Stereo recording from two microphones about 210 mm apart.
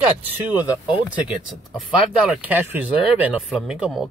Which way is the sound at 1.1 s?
5° right (ahead or behind).